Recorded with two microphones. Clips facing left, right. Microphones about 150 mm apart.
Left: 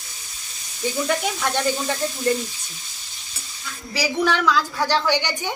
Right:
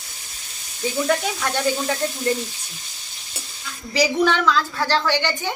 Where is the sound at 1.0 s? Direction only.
Centre (ahead or behind).